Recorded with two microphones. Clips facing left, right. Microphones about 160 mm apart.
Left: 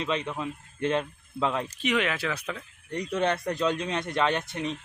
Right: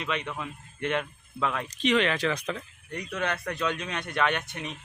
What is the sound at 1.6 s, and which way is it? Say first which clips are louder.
Speech: right 2 dB; 10° left (ahead or behind).